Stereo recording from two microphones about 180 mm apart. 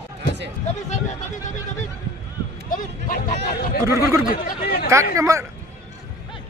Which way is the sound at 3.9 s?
15° right (ahead or behind).